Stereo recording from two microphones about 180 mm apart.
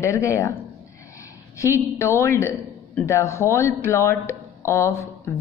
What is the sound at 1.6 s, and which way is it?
Speech, 15° left (ahead or behind).